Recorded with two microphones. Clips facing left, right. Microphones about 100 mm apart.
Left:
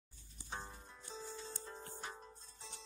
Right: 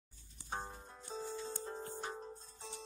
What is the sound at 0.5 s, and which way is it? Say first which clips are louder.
Music: right 4 dB; 40° right (ahead or behind).